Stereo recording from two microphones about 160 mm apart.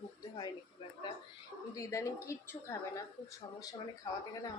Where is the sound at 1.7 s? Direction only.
20° left (ahead or behind).